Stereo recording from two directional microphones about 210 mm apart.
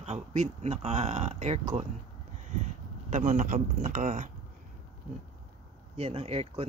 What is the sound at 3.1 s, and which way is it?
Speech, 40° right (ahead or behind).